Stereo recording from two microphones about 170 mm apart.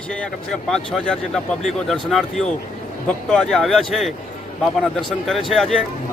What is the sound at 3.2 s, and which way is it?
A man's voice, 5° left (ahead or behind).